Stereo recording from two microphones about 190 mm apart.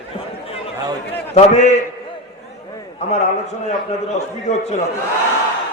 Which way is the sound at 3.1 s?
35° left (ahead or behind).